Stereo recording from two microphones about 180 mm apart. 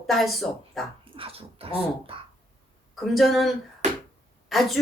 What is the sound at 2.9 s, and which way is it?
A woman's voice, centre (ahead or behind).